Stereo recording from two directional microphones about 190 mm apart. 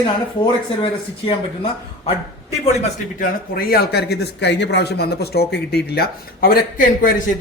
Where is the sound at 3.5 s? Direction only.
55° left (ahead or behind).